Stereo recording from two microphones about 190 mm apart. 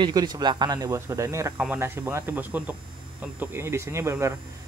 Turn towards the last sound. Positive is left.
turn(degrees=-15)  # may be behind; listen again after turning